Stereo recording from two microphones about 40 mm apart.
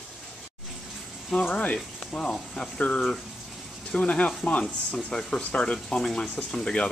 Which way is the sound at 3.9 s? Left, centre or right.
Left.